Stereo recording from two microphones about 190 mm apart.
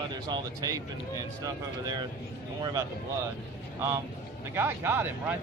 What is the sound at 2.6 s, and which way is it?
Speech, 20° right (ahead or behind).